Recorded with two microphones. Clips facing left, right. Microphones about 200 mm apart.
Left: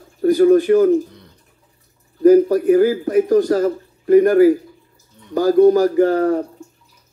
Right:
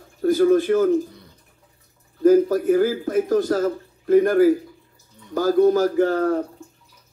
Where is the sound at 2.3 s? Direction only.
15° left (ahead or behind).